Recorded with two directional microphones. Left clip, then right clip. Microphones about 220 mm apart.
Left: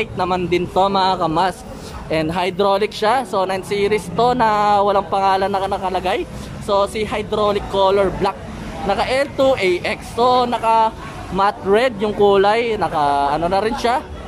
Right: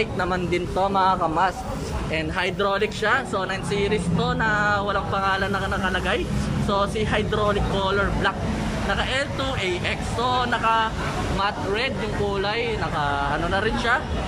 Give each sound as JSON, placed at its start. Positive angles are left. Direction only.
{"t": 0.0, "sound": "a man's voice", "side_deg": 15}